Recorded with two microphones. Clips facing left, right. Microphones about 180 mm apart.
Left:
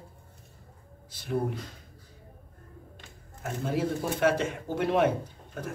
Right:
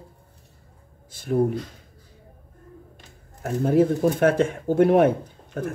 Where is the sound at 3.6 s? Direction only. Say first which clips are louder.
Right 11 dB; 50° right (ahead or behind).